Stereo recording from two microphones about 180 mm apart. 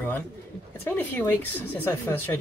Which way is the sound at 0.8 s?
10° left (ahead or behind).